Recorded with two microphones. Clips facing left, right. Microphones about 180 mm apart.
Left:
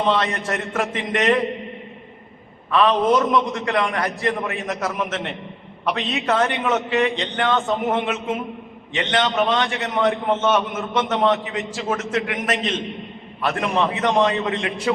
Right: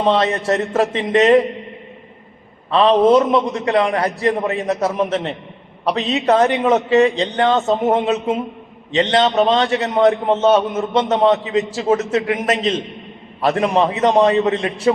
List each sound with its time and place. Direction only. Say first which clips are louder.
0.1 s speech: right 5 dB; 25° right (ahead or behind)
2.6 s a man's voice: right 5 dB; 30° right (ahead or behind)